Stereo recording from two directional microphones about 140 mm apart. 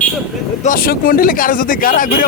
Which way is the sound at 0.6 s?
85° left.